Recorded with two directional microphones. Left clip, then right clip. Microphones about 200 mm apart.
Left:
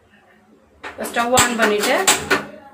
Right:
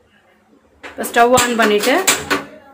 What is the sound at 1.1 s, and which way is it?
Speech, 60° right (ahead or behind).